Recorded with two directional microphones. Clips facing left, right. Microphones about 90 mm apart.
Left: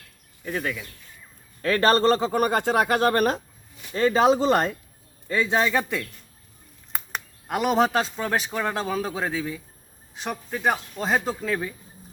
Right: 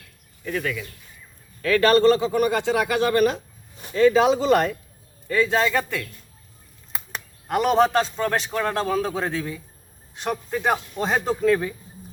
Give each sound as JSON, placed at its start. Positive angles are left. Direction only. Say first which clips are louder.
{"t": 0.4, "sound": "speech", "louder": "right 2 dB", "side_deg": 25}
{"t": 5.3, "sound": "a man's voice", "louder": "right 2 dB", "side_deg": 20}
{"t": 7.4, "sound": "speech", "louder": "right 3 dB", "side_deg": 5}